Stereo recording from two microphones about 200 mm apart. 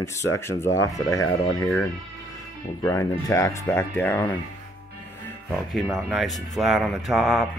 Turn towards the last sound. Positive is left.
turn(degrees=0)  # may be behind; listen again after turning